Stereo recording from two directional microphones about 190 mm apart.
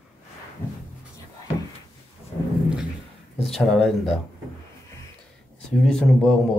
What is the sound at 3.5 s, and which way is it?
Speech, centre (ahead or behind).